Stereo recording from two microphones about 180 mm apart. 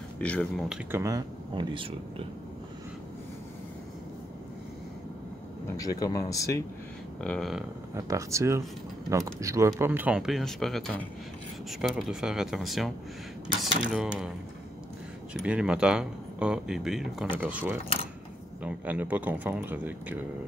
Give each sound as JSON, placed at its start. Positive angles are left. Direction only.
{"t": 0.2, "sound": "speech", "side_deg": 5}
{"t": 0.9, "sound": "speech", "side_deg": -20}
{"t": 5.7, "sound": "speech", "side_deg": 20}
{"t": 7.2, "sound": "speech", "side_deg": 5}
{"t": 7.9, "sound": "speech", "side_deg": -15}
{"t": 15.3, "sound": "speech", "side_deg": -5}